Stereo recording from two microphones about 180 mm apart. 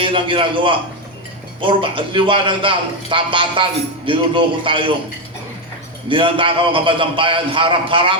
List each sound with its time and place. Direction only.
0.0 s a man's voice: 30° right (ahead or behind)
6.1 s a man's voice: 30° right (ahead or behind)